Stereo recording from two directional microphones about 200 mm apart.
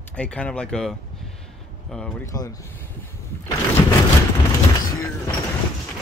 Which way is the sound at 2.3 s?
15° left (ahead or behind).